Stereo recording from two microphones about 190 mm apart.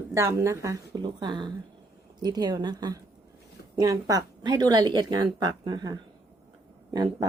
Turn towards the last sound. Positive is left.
turn(degrees=-20)  # may be behind; listen again after turning